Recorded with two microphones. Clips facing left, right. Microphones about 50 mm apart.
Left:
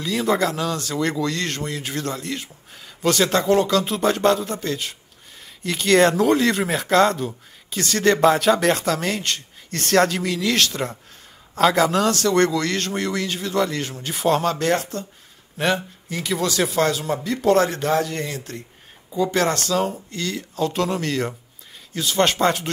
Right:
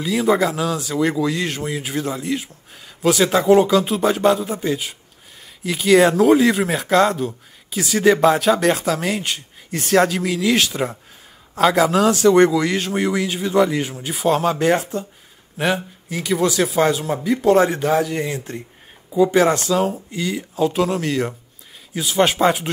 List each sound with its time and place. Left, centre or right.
0.0 s speech: centre
16.3 s speech: centre
18.3 s speech: right